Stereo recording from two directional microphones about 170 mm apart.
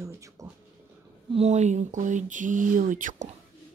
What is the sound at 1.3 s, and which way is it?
Speech, 40° right (ahead or behind).